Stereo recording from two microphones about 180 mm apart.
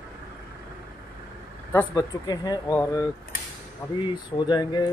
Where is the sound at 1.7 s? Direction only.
20° left (ahead or behind).